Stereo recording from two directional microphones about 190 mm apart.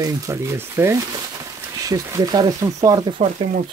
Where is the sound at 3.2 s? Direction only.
45° right (ahead or behind).